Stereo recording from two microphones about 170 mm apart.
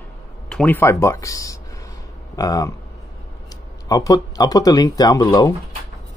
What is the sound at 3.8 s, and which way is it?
Speech, 20° left (ahead or behind).